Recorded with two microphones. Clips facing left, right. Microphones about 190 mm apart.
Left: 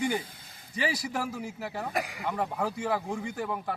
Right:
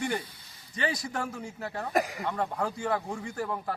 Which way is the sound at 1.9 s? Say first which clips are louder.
Right 9 dB; 40° right (ahead or behind).